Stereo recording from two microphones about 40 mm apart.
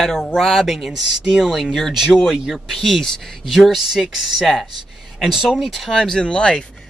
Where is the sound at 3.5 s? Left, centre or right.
Centre.